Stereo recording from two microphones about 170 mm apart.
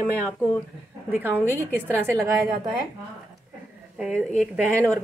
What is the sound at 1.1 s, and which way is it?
Speech, 10° right (ahead or behind).